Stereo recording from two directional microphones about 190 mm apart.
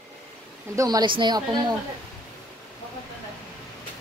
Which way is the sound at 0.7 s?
20° right (ahead or behind).